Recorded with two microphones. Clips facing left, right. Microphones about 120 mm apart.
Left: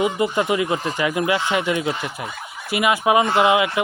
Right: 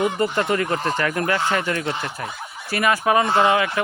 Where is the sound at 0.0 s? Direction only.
10° left (ahead or behind).